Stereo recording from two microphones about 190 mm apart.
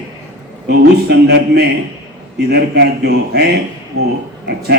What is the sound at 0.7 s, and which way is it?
Speech, 60° right (ahead or behind).